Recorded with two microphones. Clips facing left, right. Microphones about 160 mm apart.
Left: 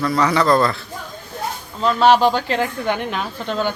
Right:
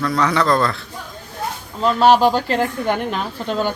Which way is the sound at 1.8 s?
5° right (ahead or behind).